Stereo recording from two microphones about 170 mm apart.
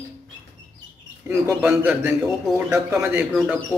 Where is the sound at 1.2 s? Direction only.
15° right (ahead or behind).